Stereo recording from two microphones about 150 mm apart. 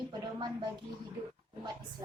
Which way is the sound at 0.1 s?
30° right (ahead or behind).